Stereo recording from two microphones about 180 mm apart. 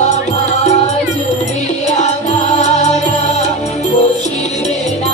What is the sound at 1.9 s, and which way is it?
Music, 40° left (ahead or behind).